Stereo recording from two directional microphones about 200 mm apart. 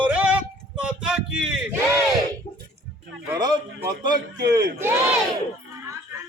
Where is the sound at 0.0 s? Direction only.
5° right (ahead or behind).